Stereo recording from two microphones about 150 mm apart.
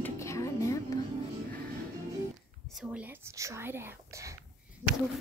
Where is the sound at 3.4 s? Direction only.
15° right (ahead or behind).